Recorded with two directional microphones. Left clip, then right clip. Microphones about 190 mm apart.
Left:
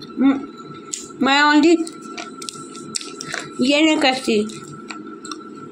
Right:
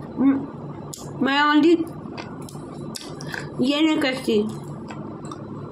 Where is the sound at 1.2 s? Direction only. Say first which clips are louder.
Left 4 dB; 15° right (ahead or behind).